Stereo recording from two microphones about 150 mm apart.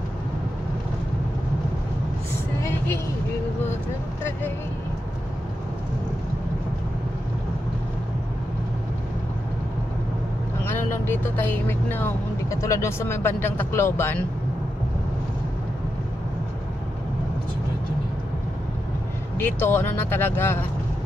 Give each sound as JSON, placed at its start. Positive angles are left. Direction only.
{"t": 10.6, "sound": "speech", "side_deg": 15}
{"t": 19.3, "sound": "speech", "side_deg": 15}